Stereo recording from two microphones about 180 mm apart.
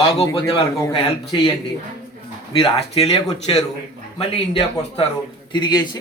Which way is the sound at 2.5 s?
35° left (ahead or behind).